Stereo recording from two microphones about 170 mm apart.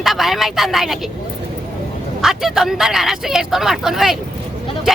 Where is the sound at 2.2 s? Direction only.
Centre (ahead or behind).